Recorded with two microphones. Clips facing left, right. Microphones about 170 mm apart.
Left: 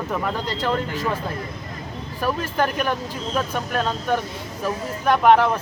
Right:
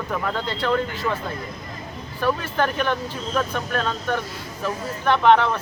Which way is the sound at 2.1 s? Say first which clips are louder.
Even; 10° left (ahead or behind).